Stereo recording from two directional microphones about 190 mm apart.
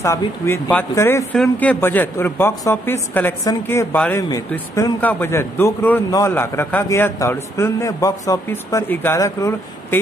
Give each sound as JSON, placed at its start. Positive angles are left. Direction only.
{"t": 0.0, "sound": "a man's voice", "side_deg": 15}